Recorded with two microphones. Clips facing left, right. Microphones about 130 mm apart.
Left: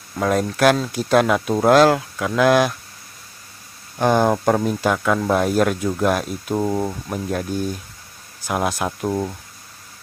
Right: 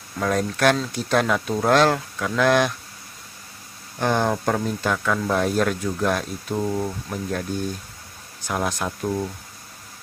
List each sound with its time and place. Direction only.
0.2 s speech: 10° left (ahead or behind)
4.0 s speech: 15° left (ahead or behind)
6.5 s speech: 25° left (ahead or behind)
6.9 s speech: 15° left (ahead or behind)
8.5 s speech: 10° left (ahead or behind)
8.8 s speech: 25° left (ahead or behind)